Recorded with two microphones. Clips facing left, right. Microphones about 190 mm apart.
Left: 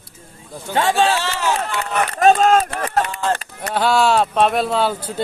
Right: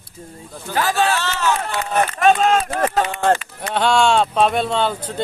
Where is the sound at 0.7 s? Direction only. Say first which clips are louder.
Left 2 dB; 25° left (ahead or behind).